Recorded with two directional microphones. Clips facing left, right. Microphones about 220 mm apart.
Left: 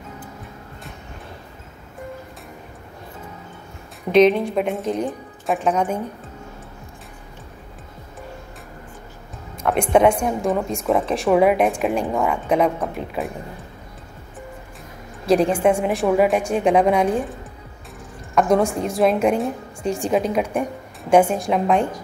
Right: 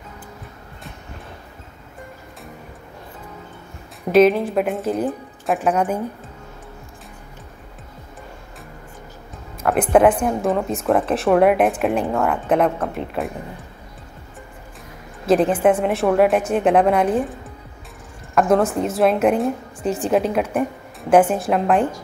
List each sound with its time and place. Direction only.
4.1 s a woman's voice: 5° right (ahead or behind)
9.6 s a woman's voice: 5° right (ahead or behind)
15.2 s a woman's voice: centre (ahead or behind)